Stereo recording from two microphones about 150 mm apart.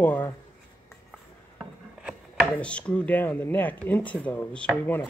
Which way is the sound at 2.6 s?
10° left (ahead or behind).